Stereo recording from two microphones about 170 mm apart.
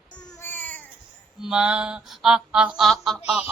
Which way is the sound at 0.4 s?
10° left (ahead or behind).